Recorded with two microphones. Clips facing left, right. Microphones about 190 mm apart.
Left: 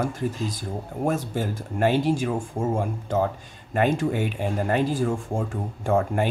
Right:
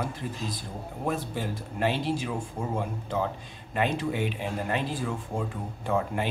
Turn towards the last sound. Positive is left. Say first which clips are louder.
# left 5 dB
turn(degrees=45)  # may be behind; listen again after turning